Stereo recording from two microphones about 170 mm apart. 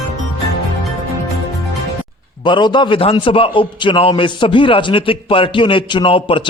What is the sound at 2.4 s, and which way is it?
A man's voice, 25° left (ahead or behind).